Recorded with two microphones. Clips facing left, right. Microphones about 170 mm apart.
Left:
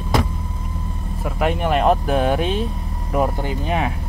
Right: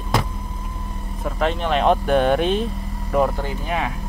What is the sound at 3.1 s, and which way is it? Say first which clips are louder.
Speech: right 1 dB; 15° left (ahead or behind).